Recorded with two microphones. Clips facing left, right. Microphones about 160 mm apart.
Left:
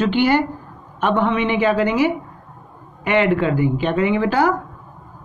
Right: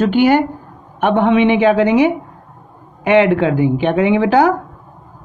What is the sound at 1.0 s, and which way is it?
Speech, 65° right (ahead or behind).